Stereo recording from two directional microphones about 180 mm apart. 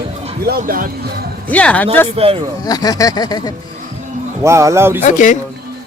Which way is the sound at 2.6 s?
20° left (ahead or behind).